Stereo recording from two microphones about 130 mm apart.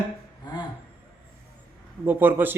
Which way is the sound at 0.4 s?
35° left (ahead or behind).